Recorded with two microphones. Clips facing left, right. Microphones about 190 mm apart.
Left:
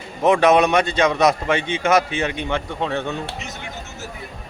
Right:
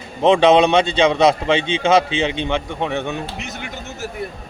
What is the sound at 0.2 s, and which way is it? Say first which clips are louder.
A man's voice: right 2 dB; 25° right (ahead or behind).